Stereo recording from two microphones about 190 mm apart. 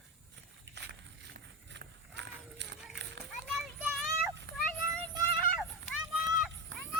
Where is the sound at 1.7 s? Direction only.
65° right (ahead or behind).